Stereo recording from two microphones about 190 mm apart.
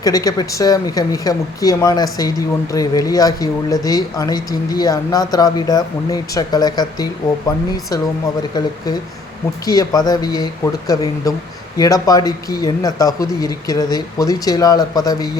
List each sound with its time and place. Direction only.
0.0 s speech: 20° left (ahead or behind)
9.6 s speech: 20° left (ahead or behind)